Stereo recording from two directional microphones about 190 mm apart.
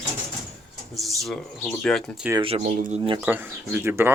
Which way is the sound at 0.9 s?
Centre (ahead or behind).